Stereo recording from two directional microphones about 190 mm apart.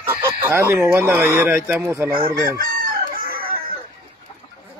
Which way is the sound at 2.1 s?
20° right (ahead or behind).